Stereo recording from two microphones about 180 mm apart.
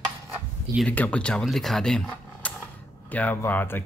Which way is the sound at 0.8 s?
5° left (ahead or behind).